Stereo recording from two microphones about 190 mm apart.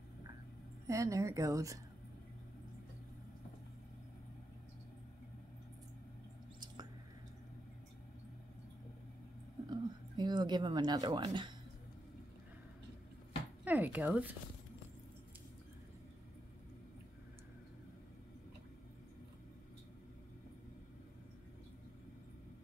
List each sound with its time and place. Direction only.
0.8 s speech: 15° right (ahead or behind)
9.7 s speech: 20° right (ahead or behind)
13.7 s speech: 10° right (ahead or behind)